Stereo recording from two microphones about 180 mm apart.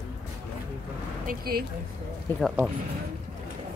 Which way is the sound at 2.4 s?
10° right (ahead or behind).